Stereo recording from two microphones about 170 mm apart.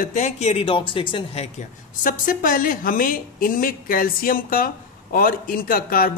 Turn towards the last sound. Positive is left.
turn(degrees=55)  # may be behind; listen again after turning